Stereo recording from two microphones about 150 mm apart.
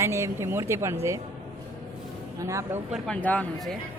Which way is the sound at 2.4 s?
20° right (ahead or behind).